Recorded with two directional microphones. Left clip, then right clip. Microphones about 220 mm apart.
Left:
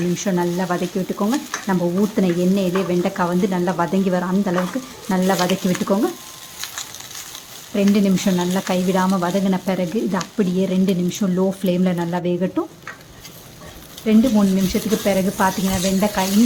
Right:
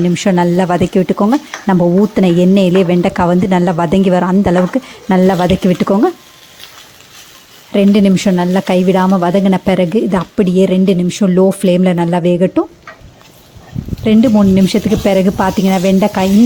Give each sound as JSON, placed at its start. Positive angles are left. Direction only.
{"t": 0.1, "sound": "speech", "side_deg": -35}
{"t": 7.7, "sound": "speech", "side_deg": -35}
{"t": 14.0, "sound": "speech", "side_deg": -40}